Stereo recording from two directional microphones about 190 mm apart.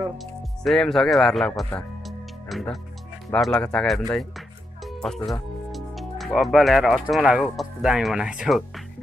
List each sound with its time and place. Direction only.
0.7 s speech: centre (ahead or behind)
1.6 s music: centre (ahead or behind)
3.3 s speech: centre (ahead or behind)
4.8 s music: centre (ahead or behind)
5.7 s speech: centre (ahead or behind)